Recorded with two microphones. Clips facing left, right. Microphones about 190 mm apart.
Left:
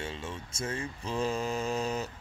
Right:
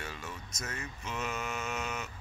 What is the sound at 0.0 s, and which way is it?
Speech, 25° left (ahead or behind).